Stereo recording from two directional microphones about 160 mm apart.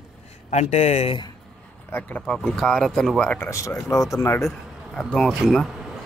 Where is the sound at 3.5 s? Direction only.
20° left (ahead or behind).